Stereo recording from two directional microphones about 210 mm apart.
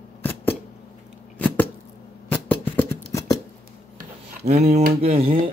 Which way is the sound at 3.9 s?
35° right (ahead or behind).